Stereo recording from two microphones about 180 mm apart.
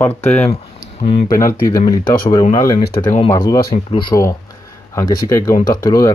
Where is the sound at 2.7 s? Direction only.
55° left (ahead or behind).